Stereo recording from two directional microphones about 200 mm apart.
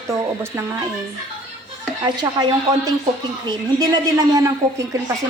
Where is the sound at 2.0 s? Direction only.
20° right (ahead or behind).